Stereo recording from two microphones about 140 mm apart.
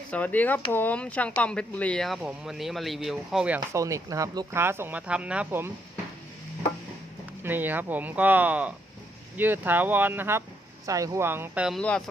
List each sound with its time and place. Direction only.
0.1 s speech: 10° left (ahead or behind); by 3.6 s 5° right (ahead or behind)
3.7 s speech: 20° right (ahead or behind)
7.4 s speech: 15° right (ahead or behind)
11.8 s speech: 10° left (ahead or behind)